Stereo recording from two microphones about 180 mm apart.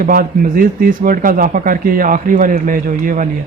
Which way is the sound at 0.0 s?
50° right (ahead or behind).